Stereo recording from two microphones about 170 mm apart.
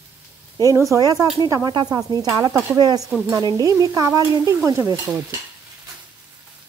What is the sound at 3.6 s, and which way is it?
Stir, 20° right (ahead or behind).